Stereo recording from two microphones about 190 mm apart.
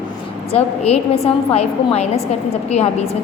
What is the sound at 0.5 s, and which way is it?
A woman's voice, 30° left (ahead or behind).